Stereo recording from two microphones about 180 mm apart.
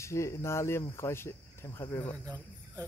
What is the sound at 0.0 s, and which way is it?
Speech, 15° left (ahead or behind).